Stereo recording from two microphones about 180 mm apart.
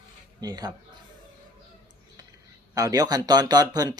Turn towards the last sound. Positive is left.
turn(degrees=-20)  # may be behind; listen again after turning